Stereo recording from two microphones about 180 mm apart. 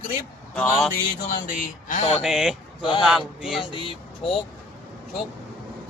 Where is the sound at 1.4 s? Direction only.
50° left (ahead or behind).